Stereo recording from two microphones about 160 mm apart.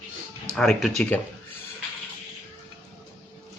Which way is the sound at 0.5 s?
5° left (ahead or behind).